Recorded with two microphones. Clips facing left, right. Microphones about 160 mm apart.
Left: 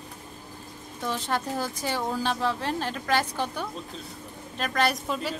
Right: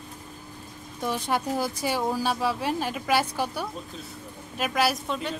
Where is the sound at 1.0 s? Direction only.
15° right (ahead or behind).